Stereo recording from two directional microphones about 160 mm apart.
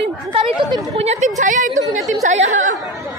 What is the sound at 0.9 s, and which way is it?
Speech, 40° right (ahead or behind).